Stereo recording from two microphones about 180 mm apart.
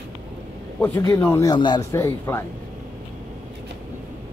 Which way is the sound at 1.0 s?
15° left (ahead or behind).